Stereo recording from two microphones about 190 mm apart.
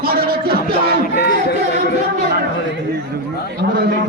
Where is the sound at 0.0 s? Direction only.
50° right (ahead or behind).